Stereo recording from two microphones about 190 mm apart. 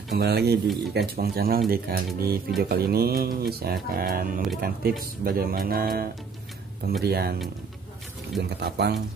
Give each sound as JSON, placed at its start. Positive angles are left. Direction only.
{"t": 0.1, "sound": "speech", "side_deg": -60}
{"t": 8.4, "sound": "speech", "side_deg": -60}